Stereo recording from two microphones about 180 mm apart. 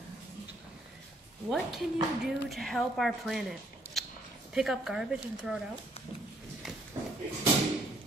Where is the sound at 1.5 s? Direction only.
Centre (ahead or behind).